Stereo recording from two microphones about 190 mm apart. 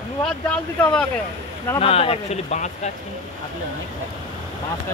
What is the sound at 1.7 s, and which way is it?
Speech, 30° left (ahead or behind).